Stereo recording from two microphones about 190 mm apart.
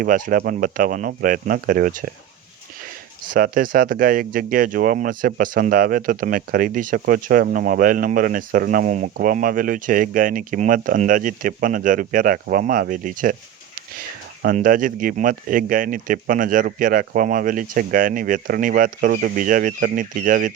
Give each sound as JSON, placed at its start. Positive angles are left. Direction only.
{"t": 0.0, "sound": "speech", "side_deg": -45}
{"t": 3.2, "sound": "speech", "side_deg": -50}
{"t": 14.4, "sound": "speech", "side_deg": -45}